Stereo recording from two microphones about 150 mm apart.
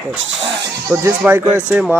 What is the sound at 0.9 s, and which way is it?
Speech, 15° right (ahead or behind).